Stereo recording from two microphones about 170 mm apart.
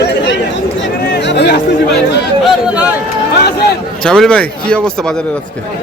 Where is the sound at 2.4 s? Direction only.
5° right (ahead or behind).